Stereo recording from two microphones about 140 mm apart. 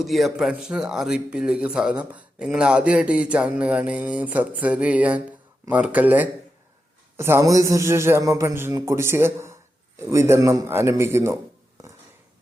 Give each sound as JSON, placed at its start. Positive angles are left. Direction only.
{"t": 0.0, "sound": "a man's voice", "side_deg": 0}